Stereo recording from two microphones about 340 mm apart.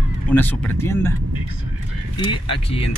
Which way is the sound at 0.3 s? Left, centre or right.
Centre.